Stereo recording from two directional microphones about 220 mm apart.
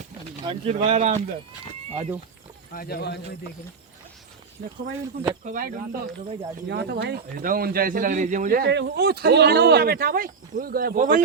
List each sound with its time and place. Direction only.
0.4 s speech: 25° right (ahead or behind)
2.7 s speech: 45° left (ahead or behind)
5.5 s speech: 40° right (ahead or behind)
6.7 s a man's voice: 50° right (ahead or behind)